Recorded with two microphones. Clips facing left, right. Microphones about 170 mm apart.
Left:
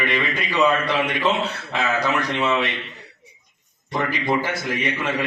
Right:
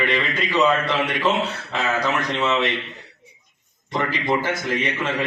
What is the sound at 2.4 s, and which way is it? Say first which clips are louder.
Speech: even; 10° left (ahead or behind).